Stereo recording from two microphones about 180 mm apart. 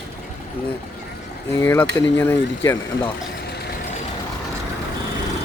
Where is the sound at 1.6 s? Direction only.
10° left (ahead or behind).